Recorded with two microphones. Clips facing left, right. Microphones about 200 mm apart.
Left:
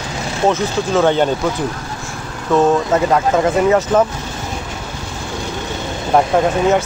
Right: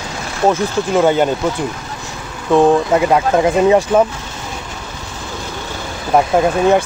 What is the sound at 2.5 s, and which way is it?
Speech, 15° right (ahead or behind).